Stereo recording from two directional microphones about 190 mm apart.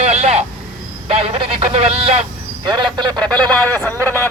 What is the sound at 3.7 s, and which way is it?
Speech, 10° left (ahead or behind).